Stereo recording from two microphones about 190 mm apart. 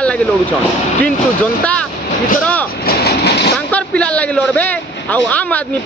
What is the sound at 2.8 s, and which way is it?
Vehicle, 60° left (ahead or behind).